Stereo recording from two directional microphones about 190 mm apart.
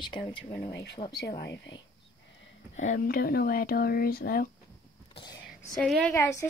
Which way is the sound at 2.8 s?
45° left (ahead or behind).